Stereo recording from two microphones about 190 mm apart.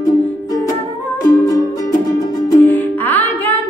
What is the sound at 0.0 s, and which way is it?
Music, 20° left (ahead or behind).